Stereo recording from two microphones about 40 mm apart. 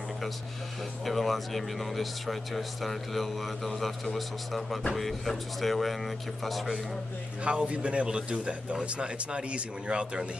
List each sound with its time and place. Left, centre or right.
1.0 s speech: centre
7.4 s speech: right